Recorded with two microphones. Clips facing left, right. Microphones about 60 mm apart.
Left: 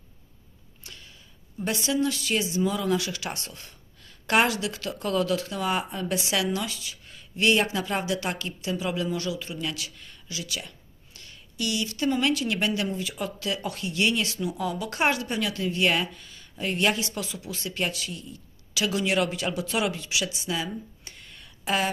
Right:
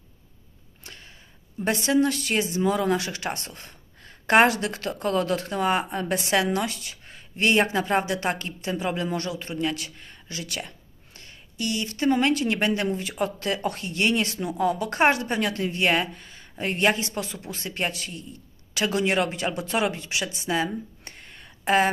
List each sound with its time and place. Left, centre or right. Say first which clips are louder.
0.8 s a sound: right 2 dB; right
1.6 s speech: right 4 dB; right
11.1 s speech: even; right